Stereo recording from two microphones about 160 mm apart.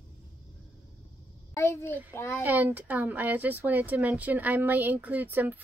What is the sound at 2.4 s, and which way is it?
Speech, 10° right (ahead or behind).